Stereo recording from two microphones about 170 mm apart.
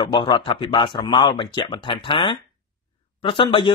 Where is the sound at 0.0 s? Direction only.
25° left (ahead or behind).